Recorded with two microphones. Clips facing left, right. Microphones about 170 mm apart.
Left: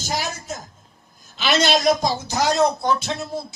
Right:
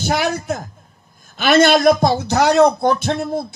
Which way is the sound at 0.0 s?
60° right (ahead or behind).